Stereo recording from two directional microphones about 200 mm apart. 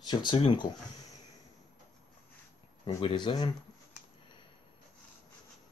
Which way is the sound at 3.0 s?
25° left (ahead or behind).